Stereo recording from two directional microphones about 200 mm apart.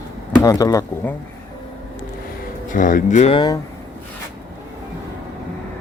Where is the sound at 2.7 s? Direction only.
40° left (ahead or behind); by 3.6 s 25° left (ahead or behind).